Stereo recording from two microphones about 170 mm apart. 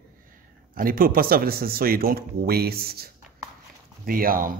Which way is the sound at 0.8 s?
55° right (ahead or behind).